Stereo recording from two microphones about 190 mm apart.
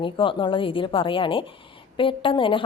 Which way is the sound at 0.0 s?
25° left (ahead or behind).